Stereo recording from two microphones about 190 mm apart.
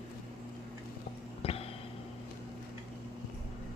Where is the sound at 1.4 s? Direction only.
30° left (ahead or behind).